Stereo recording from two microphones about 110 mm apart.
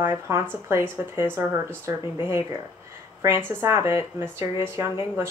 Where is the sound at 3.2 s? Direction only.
25° right (ahead or behind).